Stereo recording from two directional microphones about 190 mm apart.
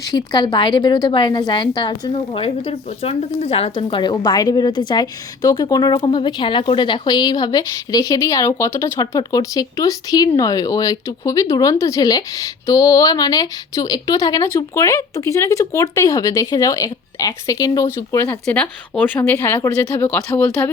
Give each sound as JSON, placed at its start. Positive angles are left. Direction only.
{"t": 0.1, "sound": "a woman's voice", "side_deg": 20}